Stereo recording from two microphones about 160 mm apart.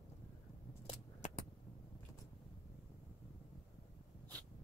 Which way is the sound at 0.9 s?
50° left (ahead or behind).